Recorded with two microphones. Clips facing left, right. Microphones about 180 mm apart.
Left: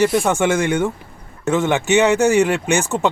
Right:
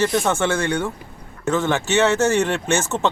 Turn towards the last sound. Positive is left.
turn(degrees=15)  # may be behind; listen again after turning